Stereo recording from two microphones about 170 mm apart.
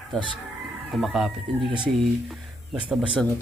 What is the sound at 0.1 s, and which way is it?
A man's voice, centre (ahead or behind).